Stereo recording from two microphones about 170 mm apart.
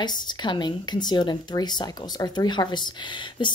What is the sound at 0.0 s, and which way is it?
Speech, 25° left (ahead or behind).